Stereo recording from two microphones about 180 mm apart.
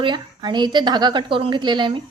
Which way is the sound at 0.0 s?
25° right (ahead or behind).